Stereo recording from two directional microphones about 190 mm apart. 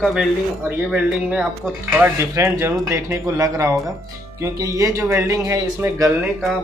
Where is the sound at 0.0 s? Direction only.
5° right (ahead or behind).